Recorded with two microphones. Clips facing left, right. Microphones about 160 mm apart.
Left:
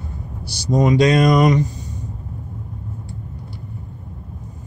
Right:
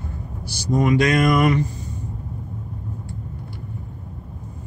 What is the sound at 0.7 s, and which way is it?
Speech, 20° left (ahead or behind).